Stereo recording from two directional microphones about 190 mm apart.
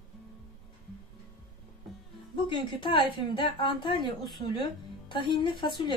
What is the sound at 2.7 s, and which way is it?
A woman's voice, 25° left (ahead or behind).